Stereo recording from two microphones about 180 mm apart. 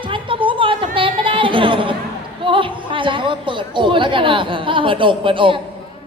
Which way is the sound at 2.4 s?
30° right (ahead or behind).